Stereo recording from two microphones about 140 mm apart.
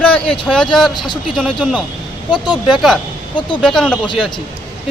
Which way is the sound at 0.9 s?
30° left (ahead or behind).